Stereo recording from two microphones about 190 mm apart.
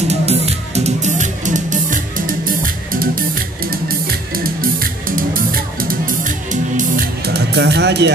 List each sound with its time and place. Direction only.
0.1 s music: 35° right (ahead or behind)
4.4 s music: 50° right (ahead or behind)